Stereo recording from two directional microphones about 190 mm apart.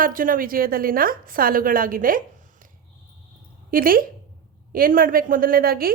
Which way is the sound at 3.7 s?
50° right (ahead or behind).